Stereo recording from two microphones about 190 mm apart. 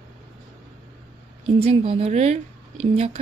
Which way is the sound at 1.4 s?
30° right (ahead or behind).